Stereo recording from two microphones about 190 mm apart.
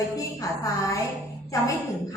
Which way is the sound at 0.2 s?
15° left (ahead or behind).